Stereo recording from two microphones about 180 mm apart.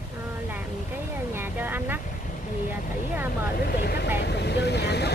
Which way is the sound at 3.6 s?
60° left (ahead or behind).